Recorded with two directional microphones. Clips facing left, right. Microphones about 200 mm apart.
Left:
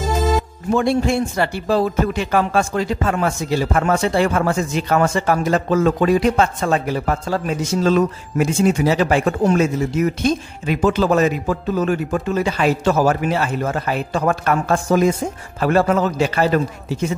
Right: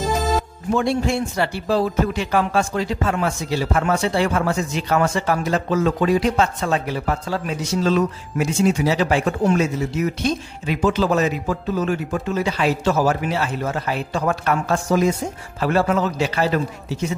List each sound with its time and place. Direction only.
0.7 s speech: 50° left (ahead or behind)